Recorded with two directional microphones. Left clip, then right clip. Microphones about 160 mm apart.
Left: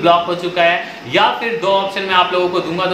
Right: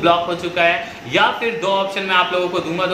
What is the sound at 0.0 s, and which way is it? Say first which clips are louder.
A man's voice: left 3 dB; 5° left (ahead or behind).